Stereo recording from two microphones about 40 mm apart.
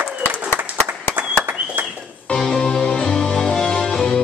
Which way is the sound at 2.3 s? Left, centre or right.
Centre.